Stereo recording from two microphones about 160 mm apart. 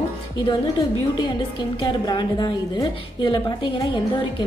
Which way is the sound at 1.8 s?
25° left (ahead or behind).